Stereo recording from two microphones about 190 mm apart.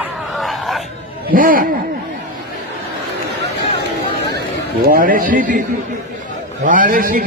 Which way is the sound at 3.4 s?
60° right (ahead or behind).